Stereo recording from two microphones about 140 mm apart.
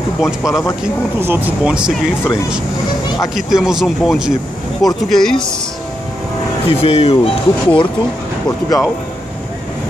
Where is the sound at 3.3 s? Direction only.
5° right (ahead or behind).